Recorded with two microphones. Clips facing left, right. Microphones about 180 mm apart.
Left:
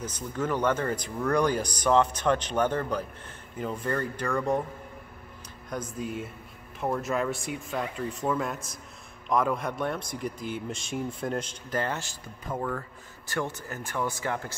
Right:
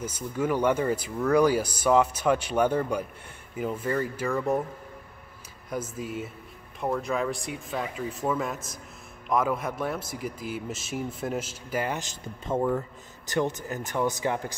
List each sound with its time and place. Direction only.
0.0 s speech: 10° right (ahead or behind)
5.9 s speech: centre (ahead or behind); by 14.5 s 20° right (ahead or behind)